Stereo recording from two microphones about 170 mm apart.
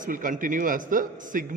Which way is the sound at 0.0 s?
50° right (ahead or behind).